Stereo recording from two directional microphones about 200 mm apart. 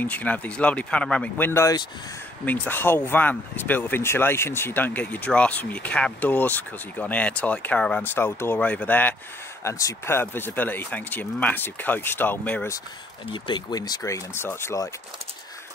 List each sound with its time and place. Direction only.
0.0 s speech: 10° left (ahead or behind)
13.3 s speech: 20° left (ahead or behind)